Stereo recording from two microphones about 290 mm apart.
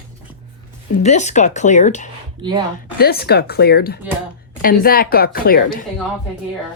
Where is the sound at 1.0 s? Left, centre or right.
Left.